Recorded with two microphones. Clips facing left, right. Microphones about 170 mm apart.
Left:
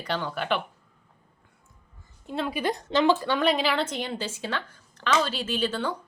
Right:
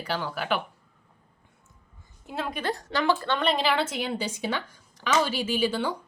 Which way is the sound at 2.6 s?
15° left (ahead or behind).